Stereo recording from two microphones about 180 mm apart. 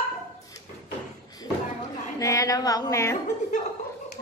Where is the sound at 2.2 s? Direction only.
20° left (ahead or behind).